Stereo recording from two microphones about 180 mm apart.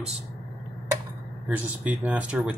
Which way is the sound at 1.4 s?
10° right (ahead or behind).